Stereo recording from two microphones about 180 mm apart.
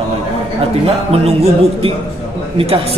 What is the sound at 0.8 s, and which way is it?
Music, 35° right (ahead or behind).